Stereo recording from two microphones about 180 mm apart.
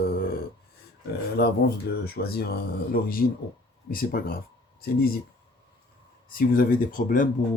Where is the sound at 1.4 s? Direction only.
60° left (ahead or behind).